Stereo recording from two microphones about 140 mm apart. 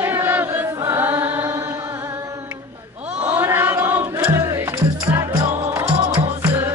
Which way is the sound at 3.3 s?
15° right (ahead or behind).